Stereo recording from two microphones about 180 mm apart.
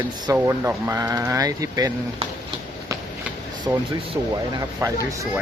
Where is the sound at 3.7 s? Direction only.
20° right (ahead or behind).